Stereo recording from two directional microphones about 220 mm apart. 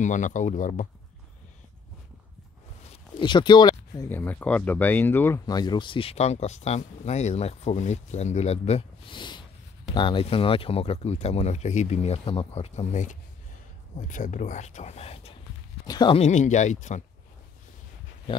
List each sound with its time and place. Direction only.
0.0 s speech: 35° left (ahead or behind)
2.8 s speech: 25° left (ahead or behind)